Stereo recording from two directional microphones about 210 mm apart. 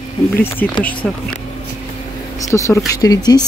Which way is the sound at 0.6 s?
5° left (ahead or behind).